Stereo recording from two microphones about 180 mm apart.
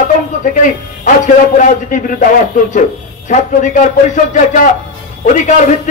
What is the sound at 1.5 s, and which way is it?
Speech, 45° left (ahead or behind).